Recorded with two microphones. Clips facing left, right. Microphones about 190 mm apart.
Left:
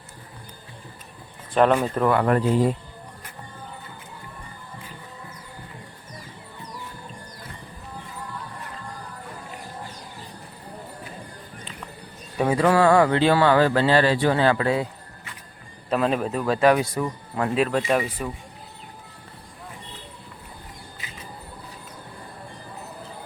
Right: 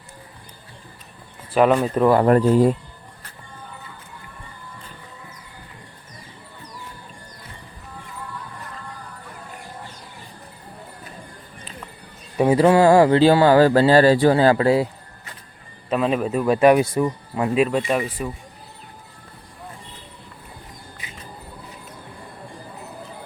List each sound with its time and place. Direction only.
1.5 s speech: 5° right (ahead or behind)
2.0 s speech: 40° right (ahead or behind)
12.5 s speech: 25° right (ahead or behind)
15.9 s speech: centre (ahead or behind)
16.5 s speech: 20° right (ahead or behind)
17.3 s speech: 5° right (ahead or behind)